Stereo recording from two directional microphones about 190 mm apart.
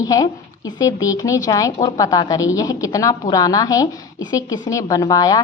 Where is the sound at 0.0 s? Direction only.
20° left (ahead or behind).